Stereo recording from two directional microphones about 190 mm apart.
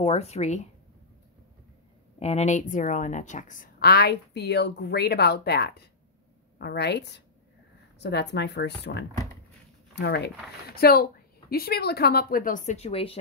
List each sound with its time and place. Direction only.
0.0 s speech: 35° left (ahead or behind)
2.1 s a woman's voice: 35° left (ahead or behind)